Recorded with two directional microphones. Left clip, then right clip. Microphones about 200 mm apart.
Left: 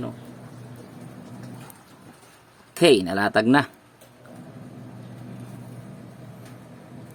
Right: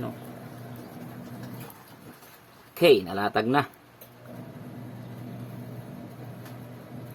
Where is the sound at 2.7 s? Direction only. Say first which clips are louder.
Left 2 dB; 55° left (ahead or behind).